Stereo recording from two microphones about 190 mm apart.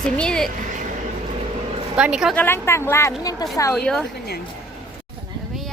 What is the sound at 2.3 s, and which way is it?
A woman's voice, 10° left (ahead or behind).